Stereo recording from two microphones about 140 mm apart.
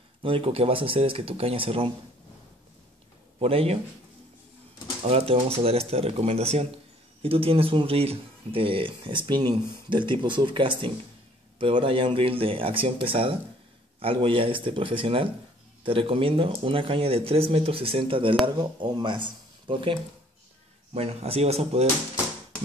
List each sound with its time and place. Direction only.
0.2 s speech: 40° right (ahead or behind)
3.3 s speech: 45° right (ahead or behind)
5.0 s speech: 45° right (ahead or behind)